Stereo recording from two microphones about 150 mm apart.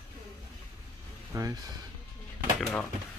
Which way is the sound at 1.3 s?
25° right (ahead or behind).